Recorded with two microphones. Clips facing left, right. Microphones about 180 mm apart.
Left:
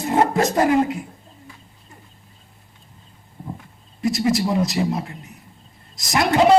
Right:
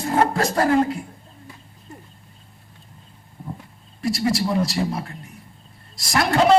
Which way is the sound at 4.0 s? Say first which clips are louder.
Left 2 dB; 20° left (ahead or behind).